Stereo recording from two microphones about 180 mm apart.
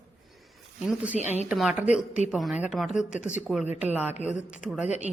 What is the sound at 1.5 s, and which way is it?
A woman's voice, 5° right (ahead or behind).